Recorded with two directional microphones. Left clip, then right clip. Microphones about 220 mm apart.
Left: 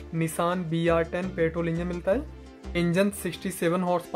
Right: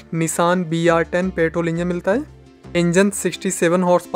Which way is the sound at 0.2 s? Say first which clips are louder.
Right 9 dB; 45° right (ahead or behind).